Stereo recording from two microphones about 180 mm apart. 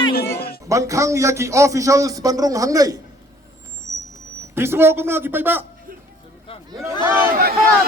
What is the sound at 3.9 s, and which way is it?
Vehicle, 15° right (ahead or behind).